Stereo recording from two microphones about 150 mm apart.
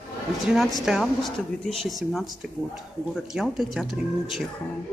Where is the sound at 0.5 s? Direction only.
Centre (ahead or behind).